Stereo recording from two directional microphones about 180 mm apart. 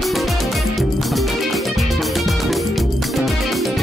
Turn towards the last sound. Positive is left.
turn(degrees=0)  # may be behind; listen again after turning